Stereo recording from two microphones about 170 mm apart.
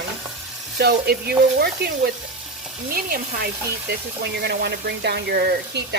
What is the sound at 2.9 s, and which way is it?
Speech, 60° right (ahead or behind).